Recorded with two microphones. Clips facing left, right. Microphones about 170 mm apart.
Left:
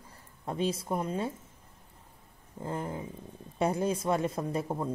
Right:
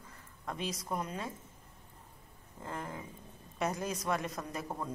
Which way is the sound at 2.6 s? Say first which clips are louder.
Left 6 dB; 30° left (ahead or behind).